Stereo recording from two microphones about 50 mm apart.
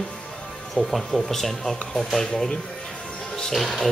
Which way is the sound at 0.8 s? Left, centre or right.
Centre.